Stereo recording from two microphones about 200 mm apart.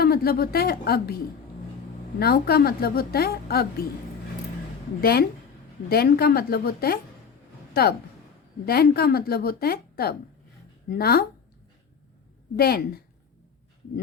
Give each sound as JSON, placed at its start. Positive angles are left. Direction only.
{"t": 0.0, "sound": "speech", "side_deg": 50}
{"t": 2.1, "sound": "a woman's voice", "side_deg": 50}
{"t": 4.9, "sound": "a woman's voice", "side_deg": 50}
{"t": 8.6, "sound": "a woman's voice", "side_deg": 50}
{"t": 12.5, "sound": "a woman's voice", "side_deg": 50}